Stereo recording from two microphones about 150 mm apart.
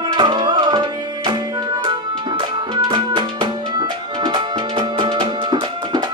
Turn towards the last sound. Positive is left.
turn(degrees=-30)  # may be behind; listen again after turning